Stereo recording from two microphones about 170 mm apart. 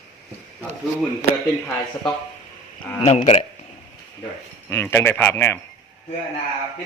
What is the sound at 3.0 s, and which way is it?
Speech, 40° left (ahead or behind).